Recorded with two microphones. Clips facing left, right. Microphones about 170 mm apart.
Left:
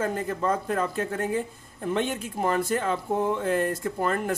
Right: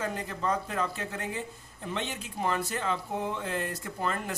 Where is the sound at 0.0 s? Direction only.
50° left (ahead or behind).